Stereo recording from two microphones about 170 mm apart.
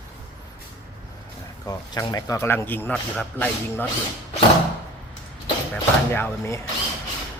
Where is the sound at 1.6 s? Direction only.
20° left (ahead or behind).